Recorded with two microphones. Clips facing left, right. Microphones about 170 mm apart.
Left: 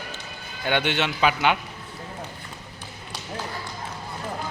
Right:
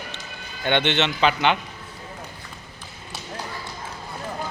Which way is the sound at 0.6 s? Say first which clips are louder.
Right 2 dB; 5° left (ahead or behind).